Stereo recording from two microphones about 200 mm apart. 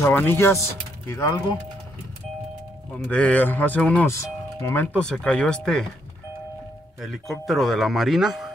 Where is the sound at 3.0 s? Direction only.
5° left (ahead or behind).